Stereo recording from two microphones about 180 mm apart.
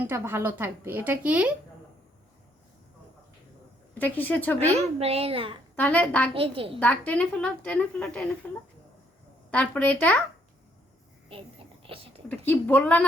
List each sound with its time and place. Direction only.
0.0 s speech: 15° right (ahead or behind)
3.9 s speech: 10° left (ahead or behind)
4.9 s a child's voice: 35° right (ahead or behind)
5.7 s speech: 10° left (ahead or behind)
6.3 s a child's voice: 30° right (ahead or behind)
6.7 s speech: 10° left (ahead or behind)
9.5 s speech: 5° left (ahead or behind)
11.3 s a sound: 30° right (ahead or behind)
12.3 s speech: 10° left (ahead or behind)